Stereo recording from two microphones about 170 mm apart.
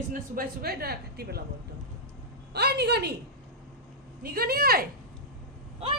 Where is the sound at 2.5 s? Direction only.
75° right (ahead or behind).